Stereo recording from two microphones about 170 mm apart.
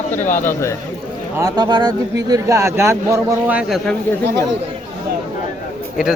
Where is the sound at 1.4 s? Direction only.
25° right (ahead or behind).